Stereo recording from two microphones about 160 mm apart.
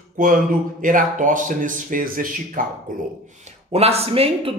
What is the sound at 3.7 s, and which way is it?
Speech, 40° right (ahead or behind).